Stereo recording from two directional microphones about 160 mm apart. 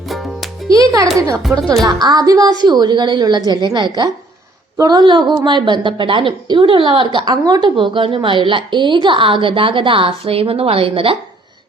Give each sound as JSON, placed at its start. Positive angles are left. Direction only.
{"t": 0.1, "sound": "music", "side_deg": 0}
{"t": 0.7, "sound": "music", "side_deg": -20}
{"t": 1.8, "sound": "a woman's voice", "side_deg": -25}